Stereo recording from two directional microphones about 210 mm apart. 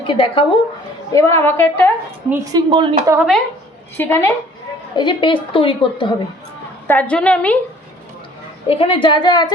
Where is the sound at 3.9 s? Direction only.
10° left (ahead or behind).